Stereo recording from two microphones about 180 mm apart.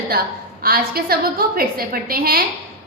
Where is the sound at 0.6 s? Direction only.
60° right (ahead or behind).